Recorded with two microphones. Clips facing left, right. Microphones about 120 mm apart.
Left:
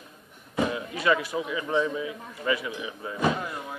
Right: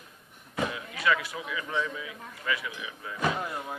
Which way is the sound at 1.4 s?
25° left (ahead or behind).